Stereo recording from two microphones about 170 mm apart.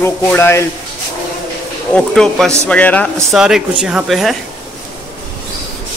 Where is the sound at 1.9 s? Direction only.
5° left (ahead or behind).